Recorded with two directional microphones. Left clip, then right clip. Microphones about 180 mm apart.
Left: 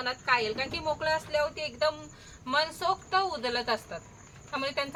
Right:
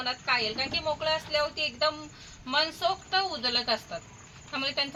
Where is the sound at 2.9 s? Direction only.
20° left (ahead or behind).